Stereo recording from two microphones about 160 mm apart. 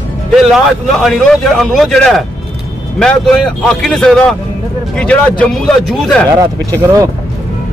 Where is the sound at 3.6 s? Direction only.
5° left (ahead or behind).